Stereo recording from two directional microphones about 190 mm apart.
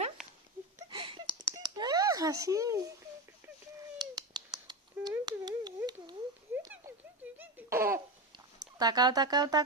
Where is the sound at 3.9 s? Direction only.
20° right (ahead or behind).